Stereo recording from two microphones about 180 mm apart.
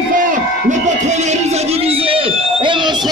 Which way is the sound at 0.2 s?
45° right (ahead or behind).